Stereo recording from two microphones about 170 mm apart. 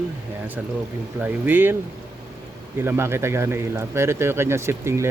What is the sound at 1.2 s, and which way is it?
Speech, 10° right (ahead or behind).